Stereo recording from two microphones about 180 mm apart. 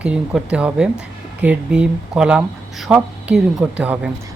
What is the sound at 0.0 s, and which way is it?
Speech, 5° right (ahead or behind).